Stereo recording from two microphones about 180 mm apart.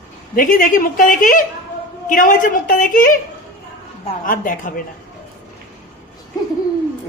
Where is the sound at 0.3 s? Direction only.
50° left (ahead or behind).